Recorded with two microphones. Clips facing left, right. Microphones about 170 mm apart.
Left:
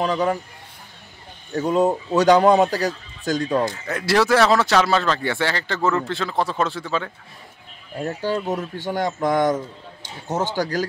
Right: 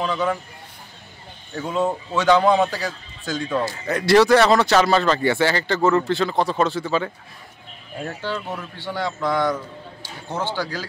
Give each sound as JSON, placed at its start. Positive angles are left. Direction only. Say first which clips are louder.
{"t": 0.0, "sound": "a man's voice", "louder": "left 2 dB", "side_deg": 35}
{"t": 1.5, "sound": "a man's voice", "louder": "left 4 dB", "side_deg": 40}
{"t": 3.6, "sound": "speech", "louder": "right 2 dB", "side_deg": -5}
{"t": 8.4, "sound": "speech", "louder": "left 6 dB", "side_deg": 20}
{"t": 8.7, "sound": "speech", "louder": "left 3 dB", "side_deg": 45}